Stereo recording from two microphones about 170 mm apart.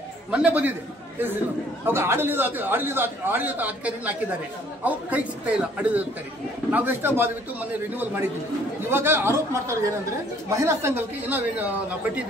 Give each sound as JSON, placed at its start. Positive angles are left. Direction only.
{"t": 0.3, "sound": "a man's voice", "side_deg": -5}
{"t": 1.9, "sound": "a man's voice", "side_deg": -15}
{"t": 8.8, "sound": "a man's voice", "side_deg": -15}